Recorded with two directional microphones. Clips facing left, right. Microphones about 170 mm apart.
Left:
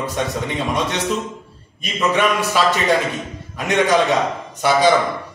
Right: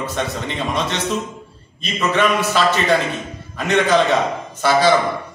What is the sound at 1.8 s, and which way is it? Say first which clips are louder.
A man's voice: even; 10° left (ahead or behind).